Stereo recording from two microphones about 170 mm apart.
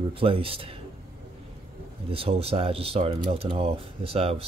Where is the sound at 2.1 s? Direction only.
35° right (ahead or behind).